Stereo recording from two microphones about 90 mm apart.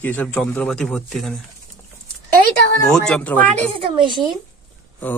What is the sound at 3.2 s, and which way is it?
Speech, 15° left (ahead or behind).